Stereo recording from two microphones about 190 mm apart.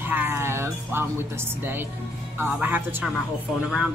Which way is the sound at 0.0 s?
10° right (ahead or behind).